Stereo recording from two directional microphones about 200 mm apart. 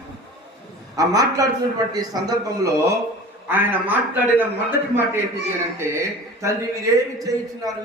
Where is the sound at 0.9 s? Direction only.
15° right (ahead or behind).